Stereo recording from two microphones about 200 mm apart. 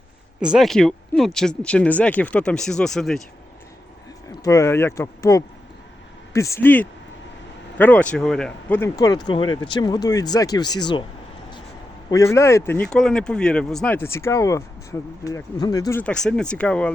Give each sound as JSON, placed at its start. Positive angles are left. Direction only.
{"t": 0.4, "sound": "speech", "side_deg": 0}
{"t": 4.4, "sound": "a man's voice", "side_deg": 15}
{"t": 12.1, "sound": "a man's voice", "side_deg": 15}